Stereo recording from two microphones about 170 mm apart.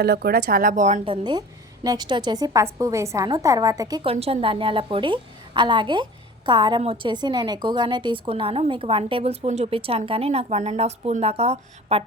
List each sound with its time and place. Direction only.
0.0 s speech: 65° right (ahead or behind); by 1.0 s 45° right (ahead or behind)
1.0 s a woman's voice: 30° right (ahead or behind)
4.0 s a woman's voice: 35° right (ahead or behind)